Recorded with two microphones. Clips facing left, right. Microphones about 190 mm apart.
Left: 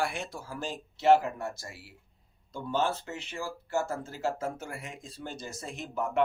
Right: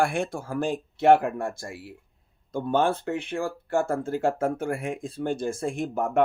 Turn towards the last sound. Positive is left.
turn(degrees=-50)  # may be behind; listen again after turning